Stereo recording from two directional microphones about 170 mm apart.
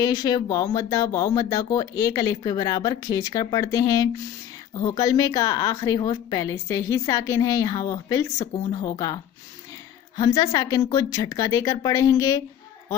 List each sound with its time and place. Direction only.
0.0 s a woman's voice: 25° left (ahead or behind)